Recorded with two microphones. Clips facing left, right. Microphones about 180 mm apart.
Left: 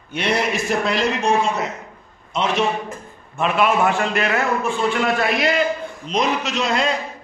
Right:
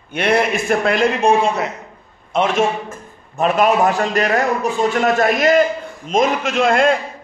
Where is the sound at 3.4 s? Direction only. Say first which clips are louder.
Right 3 dB; 40° right (ahead or behind).